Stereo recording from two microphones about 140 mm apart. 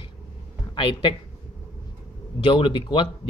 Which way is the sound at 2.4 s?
40° left (ahead or behind).